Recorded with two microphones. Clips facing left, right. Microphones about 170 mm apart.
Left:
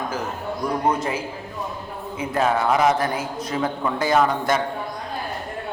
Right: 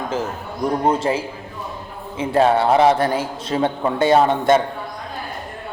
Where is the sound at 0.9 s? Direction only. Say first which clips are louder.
Right 4 dB; 30° right (ahead or behind).